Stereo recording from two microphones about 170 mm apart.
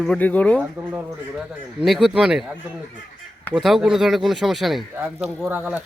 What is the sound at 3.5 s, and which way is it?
Speech, centre (ahead or behind).